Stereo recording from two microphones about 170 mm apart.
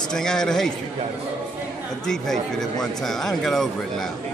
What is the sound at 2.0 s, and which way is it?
Speech, 5° left (ahead or behind).